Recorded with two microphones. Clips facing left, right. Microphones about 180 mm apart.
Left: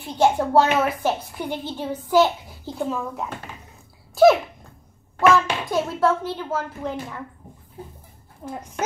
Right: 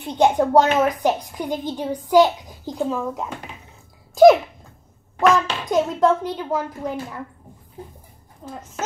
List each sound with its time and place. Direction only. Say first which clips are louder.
0.0 s speech: right 2 dB; 20° right (ahead or behind)
4.1 s a sound: right 3 dB; 15° right (ahead or behind)
5.3 s a child's voice: right 1 dB; 20° right (ahead or behind)
8.5 s speech: left 2 dB; 15° left (ahead or behind)